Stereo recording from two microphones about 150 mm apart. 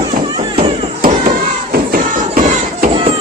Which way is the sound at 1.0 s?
75° right (ahead or behind).